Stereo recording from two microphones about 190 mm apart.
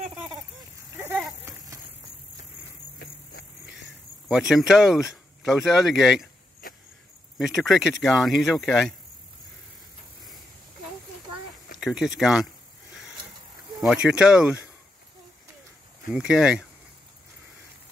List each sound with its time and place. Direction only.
0.9 s a sound: 10° right (ahead or behind)
4.3 s speech: centre (ahead or behind)
7.3 s speech: centre (ahead or behind)
11.8 s speech: centre (ahead or behind)
13.7 s speech: 5° right (ahead or behind)
16.1 s speech: 5° right (ahead or behind)